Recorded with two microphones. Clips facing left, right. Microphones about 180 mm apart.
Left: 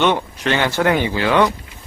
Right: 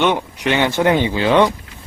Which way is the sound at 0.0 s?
15° right (ahead or behind).